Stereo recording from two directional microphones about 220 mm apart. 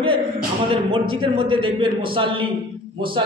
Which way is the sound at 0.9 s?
25° right (ahead or behind).